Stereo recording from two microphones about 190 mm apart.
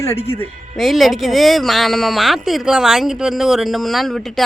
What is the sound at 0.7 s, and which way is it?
Speech, centre (ahead or behind).